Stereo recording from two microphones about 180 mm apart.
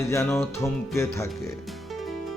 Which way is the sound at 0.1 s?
15° left (ahead or behind).